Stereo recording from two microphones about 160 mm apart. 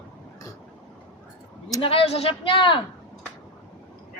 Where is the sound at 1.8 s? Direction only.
35° left (ahead or behind).